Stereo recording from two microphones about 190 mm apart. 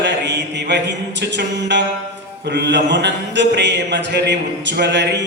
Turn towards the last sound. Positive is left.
turn(degrees=-65)  # may be behind; listen again after turning